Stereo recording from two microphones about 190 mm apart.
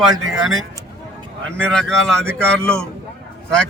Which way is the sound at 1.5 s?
5° left (ahead or behind).